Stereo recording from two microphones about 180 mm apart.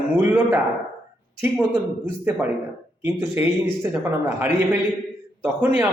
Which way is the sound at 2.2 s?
10° right (ahead or behind).